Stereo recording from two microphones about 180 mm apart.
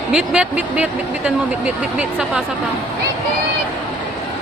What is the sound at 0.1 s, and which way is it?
Speech, 5° right (ahead or behind).